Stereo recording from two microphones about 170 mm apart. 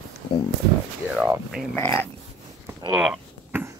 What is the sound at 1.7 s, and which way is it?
Speech, 15° left (ahead or behind).